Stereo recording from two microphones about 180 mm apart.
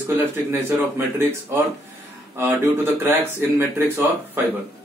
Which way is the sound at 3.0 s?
10° right (ahead or behind).